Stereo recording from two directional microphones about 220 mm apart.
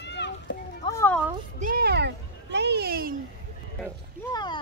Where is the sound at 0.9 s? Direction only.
10° left (ahead or behind).